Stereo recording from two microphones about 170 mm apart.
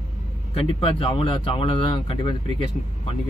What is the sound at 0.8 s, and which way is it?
Speech, 30° left (ahead or behind).